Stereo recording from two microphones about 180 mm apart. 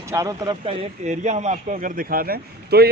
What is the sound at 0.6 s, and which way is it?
Speech, 40° right (ahead or behind).